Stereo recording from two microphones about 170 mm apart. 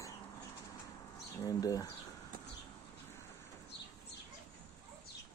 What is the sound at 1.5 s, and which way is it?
Speech, 20° left (ahead or behind).